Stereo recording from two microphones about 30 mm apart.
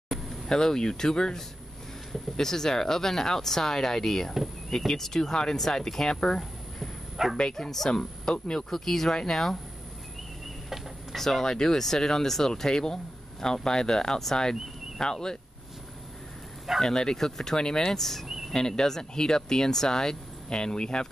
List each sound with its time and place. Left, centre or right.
0.1 s a sound: centre
0.5 s speech: left
7.2 s speech: centre
7.5 s speech: centre
11.1 s speech: centre
11.4 s speech: left
16.8 s speech: centre
17.6 s speech: left
17.8 s speech: centre; by 21.1 s left